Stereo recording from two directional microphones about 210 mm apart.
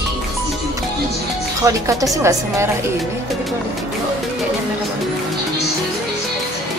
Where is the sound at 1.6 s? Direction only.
15° right (ahead or behind).